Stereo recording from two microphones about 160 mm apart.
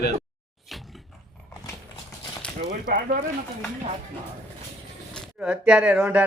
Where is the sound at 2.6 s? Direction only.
60° right (ahead or behind).